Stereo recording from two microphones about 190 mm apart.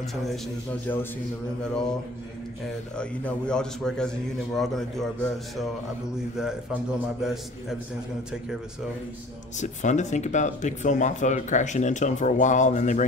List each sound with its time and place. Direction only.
0.1 s a man's voice: centre (ahead or behind)
3.0 s a man's voice: 5° left (ahead or behind)
9.6 s speech: 40° left (ahead or behind)